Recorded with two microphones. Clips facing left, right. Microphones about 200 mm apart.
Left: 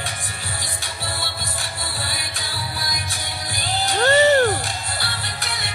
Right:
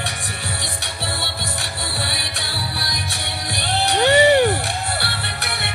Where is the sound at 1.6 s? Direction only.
70° right (ahead or behind).